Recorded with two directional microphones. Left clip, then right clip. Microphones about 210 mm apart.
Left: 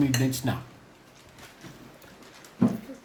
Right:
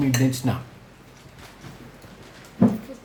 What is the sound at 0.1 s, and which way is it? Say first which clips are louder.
Speech: right 4 dB; 30° left (ahead or behind).